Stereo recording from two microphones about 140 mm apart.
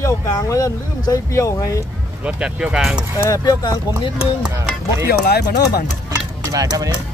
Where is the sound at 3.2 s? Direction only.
25° left (ahead or behind).